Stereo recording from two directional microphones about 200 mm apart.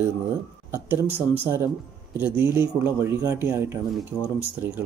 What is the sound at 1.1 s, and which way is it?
Speech, 10° left (ahead or behind).